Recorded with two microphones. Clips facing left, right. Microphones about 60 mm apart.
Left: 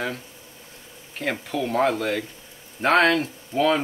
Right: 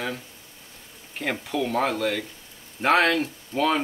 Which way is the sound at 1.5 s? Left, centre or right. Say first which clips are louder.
Left 3 dB; centre.